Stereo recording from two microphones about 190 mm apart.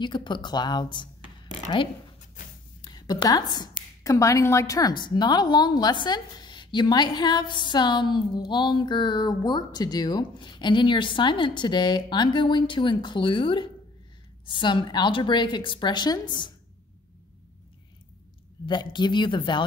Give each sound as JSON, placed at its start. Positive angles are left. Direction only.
{"t": 0.0, "sound": "a woman's voice", "side_deg": 25}
{"t": 2.8, "sound": "a woman's voice", "side_deg": 20}
{"t": 18.7, "sound": "a woman's voice", "side_deg": 25}